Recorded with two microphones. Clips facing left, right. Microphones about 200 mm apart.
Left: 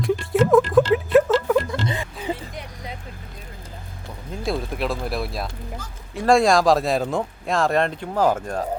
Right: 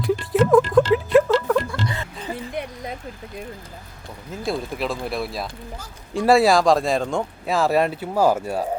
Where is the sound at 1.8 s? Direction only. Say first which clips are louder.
Left 1 dB; 20° left (ahead or behind).